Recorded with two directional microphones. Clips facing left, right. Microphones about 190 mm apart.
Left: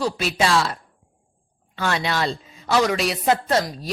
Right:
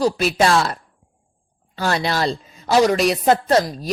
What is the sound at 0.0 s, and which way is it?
Speech, 40° right (ahead or behind).